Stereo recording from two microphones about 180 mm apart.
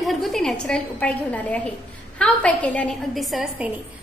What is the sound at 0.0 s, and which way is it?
A woman's voice, centre (ahead or behind).